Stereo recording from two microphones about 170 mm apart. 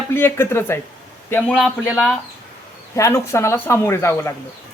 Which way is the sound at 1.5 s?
Centre (ahead or behind).